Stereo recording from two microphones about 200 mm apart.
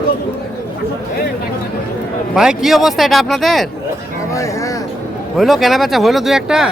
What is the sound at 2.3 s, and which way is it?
Speech, centre (ahead or behind).